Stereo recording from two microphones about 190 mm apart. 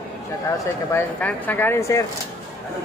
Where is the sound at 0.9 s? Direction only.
10° left (ahead or behind).